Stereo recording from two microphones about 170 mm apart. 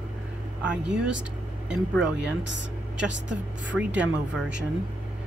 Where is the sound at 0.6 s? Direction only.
5° right (ahead or behind).